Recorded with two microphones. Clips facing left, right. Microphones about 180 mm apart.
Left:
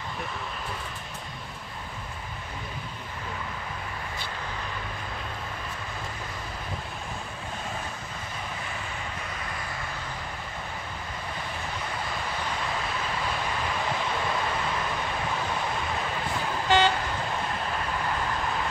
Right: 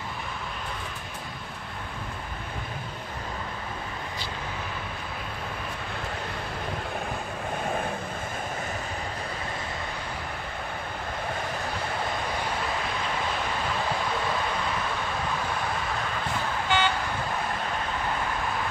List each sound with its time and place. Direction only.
16.6 s vehicle: 40° left (ahead or behind)